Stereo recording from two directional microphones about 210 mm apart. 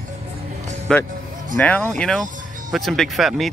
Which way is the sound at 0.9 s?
5° left (ahead or behind).